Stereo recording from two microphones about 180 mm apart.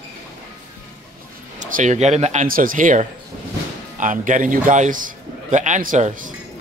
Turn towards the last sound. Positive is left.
turn(degrees=-45)  # may be behind; listen again after turning